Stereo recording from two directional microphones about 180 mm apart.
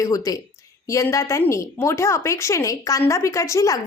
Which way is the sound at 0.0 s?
20° left (ahead or behind).